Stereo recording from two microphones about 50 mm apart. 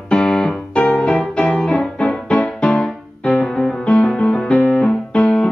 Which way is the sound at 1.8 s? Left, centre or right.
Centre.